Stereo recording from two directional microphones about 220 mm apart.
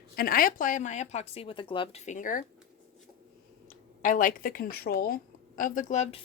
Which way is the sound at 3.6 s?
35° left (ahead or behind).